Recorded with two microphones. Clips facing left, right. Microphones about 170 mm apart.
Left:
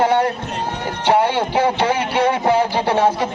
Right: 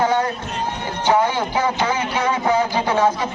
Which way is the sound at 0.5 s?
70° left (ahead or behind).